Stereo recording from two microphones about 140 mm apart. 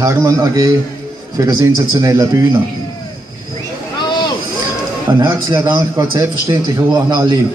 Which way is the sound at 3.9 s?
30° left (ahead or behind).